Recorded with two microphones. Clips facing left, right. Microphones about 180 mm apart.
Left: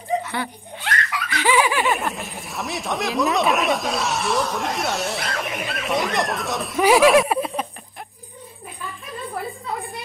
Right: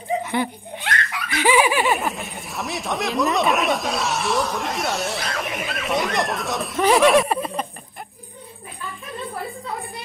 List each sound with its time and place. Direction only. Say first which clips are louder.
0.2 s laughter: right 4 dB; 15° right (ahead or behind)
1.3 s giggle: right 2 dB; 15° right (ahead or behind)
2.0 s speech: right 1 dB; centre (ahead or behind)